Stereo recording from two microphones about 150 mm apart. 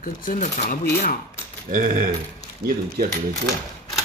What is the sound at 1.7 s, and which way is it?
Speech, 60° right (ahead or behind).